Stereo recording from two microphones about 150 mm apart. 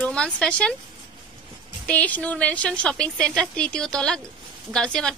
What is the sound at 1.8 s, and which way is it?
A woman's voice, 10° left (ahead or behind).